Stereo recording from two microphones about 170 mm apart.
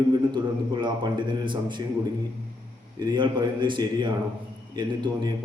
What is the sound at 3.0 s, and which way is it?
A man's voice, 25° right (ahead or behind).